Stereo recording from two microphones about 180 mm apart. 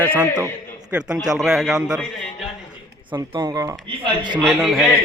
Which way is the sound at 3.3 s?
25° right (ahead or behind).